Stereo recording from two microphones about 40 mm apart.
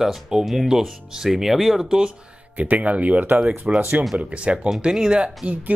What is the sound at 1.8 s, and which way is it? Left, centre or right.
Speech, right.